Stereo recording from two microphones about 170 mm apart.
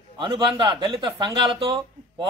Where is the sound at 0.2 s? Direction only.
30° right (ahead or behind).